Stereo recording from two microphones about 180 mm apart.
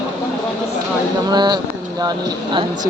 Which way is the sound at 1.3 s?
25° right (ahead or behind).